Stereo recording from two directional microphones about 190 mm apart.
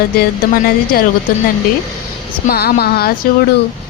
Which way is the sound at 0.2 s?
50° left (ahead or behind).